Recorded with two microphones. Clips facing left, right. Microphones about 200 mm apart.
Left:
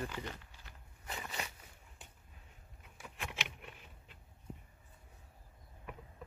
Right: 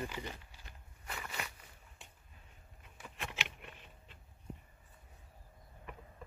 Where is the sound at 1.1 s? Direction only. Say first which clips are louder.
Left 1 dB; 25° left (ahead or behind).